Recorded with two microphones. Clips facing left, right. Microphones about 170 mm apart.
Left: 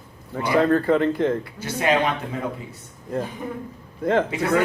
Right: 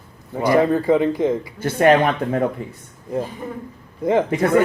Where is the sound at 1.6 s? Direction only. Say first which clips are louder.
Right 7 dB; 55° right (ahead or behind).